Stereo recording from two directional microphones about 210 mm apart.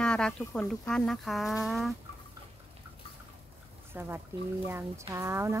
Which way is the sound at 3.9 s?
10° right (ahead or behind).